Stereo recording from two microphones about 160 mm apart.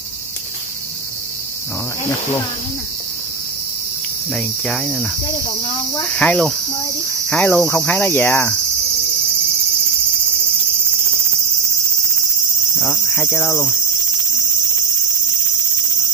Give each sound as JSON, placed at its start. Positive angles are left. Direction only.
{"t": 4.3, "sound": "cricket", "side_deg": 0}
{"t": 5.2, "sound": "speech", "side_deg": 25}
{"t": 6.1, "sound": "cricket", "side_deg": 5}
{"t": 12.8, "sound": "cricket", "side_deg": 10}